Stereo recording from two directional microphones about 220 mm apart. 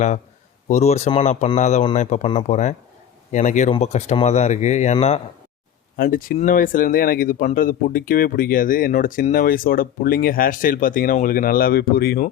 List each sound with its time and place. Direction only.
0.7 s speech: 30° left (ahead or behind)